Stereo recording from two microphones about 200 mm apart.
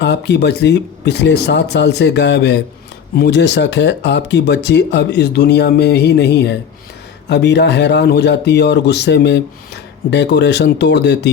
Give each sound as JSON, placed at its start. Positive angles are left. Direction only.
{"t": 0.0, "sound": "speech", "side_deg": 55}